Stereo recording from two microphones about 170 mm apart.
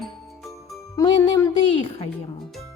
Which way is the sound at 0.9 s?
20° left (ahead or behind).